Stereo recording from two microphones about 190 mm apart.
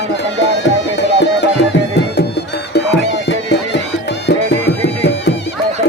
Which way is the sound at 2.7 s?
65° left (ahead or behind).